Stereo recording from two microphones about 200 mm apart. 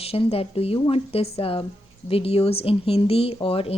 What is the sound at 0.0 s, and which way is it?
Speech, 30° left (ahead or behind).